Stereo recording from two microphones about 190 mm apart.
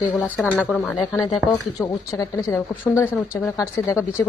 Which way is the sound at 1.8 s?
15° left (ahead or behind).